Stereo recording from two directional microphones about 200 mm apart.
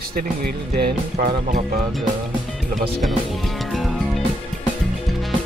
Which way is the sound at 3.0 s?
Centre (ahead or behind).